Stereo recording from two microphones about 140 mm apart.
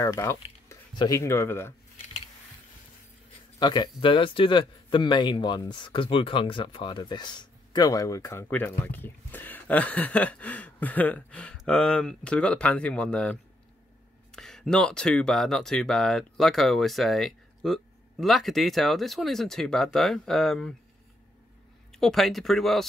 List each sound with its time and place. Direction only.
0.0 s speech: 20° left (ahead or behind)
3.5 s a man's voice: 30° left (ahead or behind); by 20.7 s 5° left (ahead or behind)
21.9 s speech: centre (ahead or behind)